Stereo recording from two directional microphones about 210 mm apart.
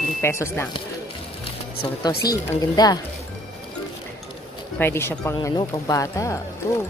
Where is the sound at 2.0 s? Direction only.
20° left (ahead or behind).